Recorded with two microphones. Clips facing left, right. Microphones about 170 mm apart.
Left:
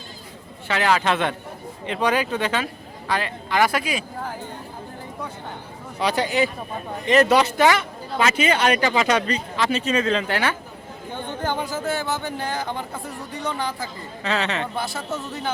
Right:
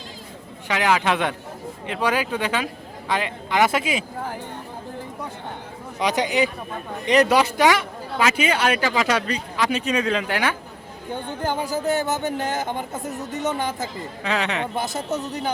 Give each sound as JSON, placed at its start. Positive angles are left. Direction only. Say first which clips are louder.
{"t": 0.7, "sound": "speech", "louder": "even", "side_deg": -15}
{"t": 6.0, "sound": "speech", "louder": "even", "side_deg": -15}